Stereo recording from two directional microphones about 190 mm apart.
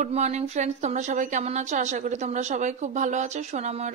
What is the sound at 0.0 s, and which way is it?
A woman's voice, 35° right (ahead or behind).